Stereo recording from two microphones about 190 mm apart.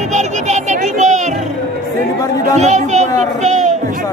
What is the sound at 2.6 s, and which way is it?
Children playing, 35° right (ahead or behind).